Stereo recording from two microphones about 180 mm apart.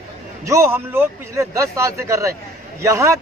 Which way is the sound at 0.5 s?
15° right (ahead or behind).